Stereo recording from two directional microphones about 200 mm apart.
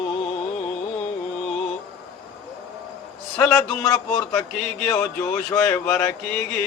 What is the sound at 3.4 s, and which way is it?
A man's voice, 5° left (ahead or behind).